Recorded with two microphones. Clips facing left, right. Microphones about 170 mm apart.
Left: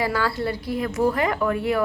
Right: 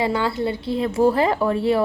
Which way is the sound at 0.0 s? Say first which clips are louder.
Right 2 dB; 25° right (ahead or behind).